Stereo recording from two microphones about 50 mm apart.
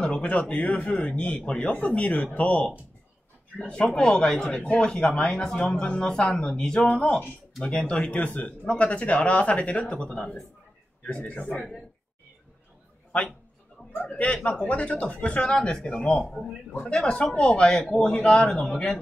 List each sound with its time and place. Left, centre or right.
0.2 s speech: left
4.5 s speech: left
4.7 s speech: centre; by 11.6 s left
13.9 s speech: left